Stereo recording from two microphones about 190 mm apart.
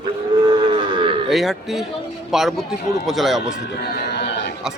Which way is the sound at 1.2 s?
Centre (ahead or behind).